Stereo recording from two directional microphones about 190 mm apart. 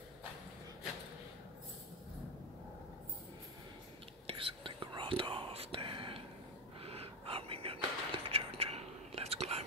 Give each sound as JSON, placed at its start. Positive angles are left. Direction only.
{"t": 4.3, "sound": "whispering", "side_deg": -30}